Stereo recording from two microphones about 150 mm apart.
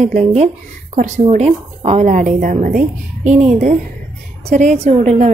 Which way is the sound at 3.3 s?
50° right (ahead or behind).